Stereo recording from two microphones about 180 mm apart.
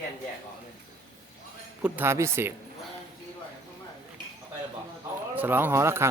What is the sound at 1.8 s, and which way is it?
Speech, 10° right (ahead or behind).